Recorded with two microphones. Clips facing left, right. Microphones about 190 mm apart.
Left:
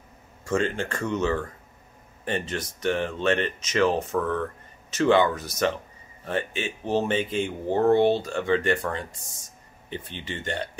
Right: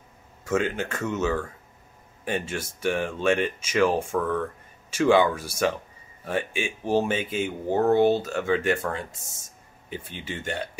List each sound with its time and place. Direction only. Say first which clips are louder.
0.5 s speech: even; 5° right (ahead or behind)
9.1 s speech: even; 25° right (ahead or behind)
9.8 s speech: even; 10° right (ahead or behind)